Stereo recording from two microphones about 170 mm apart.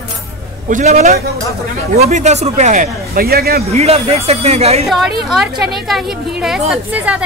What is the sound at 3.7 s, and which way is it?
Speech, 35° right (ahead or behind).